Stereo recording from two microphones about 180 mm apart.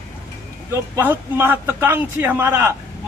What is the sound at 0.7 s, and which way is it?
A man's voice, 10° right (ahead or behind).